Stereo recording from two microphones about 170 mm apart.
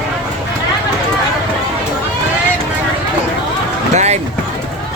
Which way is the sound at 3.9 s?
40° right (ahead or behind).